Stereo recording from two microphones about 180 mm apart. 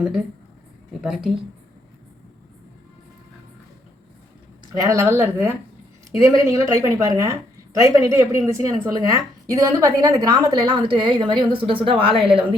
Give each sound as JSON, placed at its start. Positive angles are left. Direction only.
{"t": 1.0, "sound": "a woman's voice", "side_deg": 0}
{"t": 4.8, "sound": "a woman's voice", "side_deg": -15}